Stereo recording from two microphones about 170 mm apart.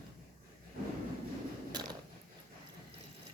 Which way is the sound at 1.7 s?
25° right (ahead or behind).